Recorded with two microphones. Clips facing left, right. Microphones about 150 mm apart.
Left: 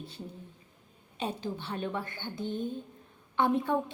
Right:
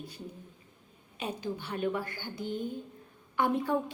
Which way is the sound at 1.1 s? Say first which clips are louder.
Left 1 dB; 25° left (ahead or behind).